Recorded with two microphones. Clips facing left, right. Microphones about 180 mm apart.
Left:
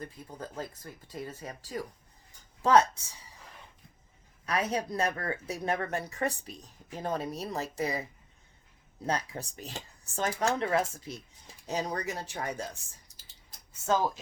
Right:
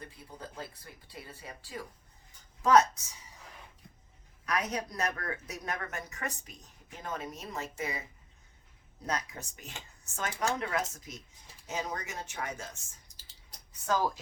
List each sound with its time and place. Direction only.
0.0 s speech: 45° left (ahead or behind)
2.6 s a woman's voice: 30° left (ahead or behind)
4.4 s speech: 30° left (ahead or behind)
9.0 s speech: 30° left (ahead or behind)
13.8 s a woman's voice: 20° left (ahead or behind)